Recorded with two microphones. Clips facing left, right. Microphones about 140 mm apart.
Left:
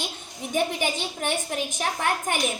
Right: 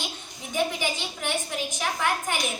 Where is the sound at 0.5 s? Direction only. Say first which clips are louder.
Left 2 dB; 50° left (ahead or behind).